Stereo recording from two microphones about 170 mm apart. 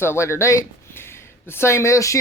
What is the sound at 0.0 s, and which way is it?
Speech, 15° left (ahead or behind).